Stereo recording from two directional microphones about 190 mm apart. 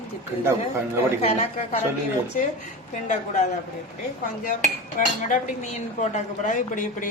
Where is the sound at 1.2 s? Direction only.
35° left (ahead or behind).